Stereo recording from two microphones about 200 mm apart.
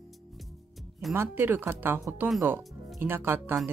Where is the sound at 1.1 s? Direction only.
10° right (ahead or behind).